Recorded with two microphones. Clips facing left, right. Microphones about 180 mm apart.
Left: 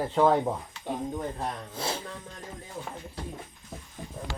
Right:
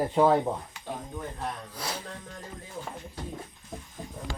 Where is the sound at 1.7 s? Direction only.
25° left (ahead or behind).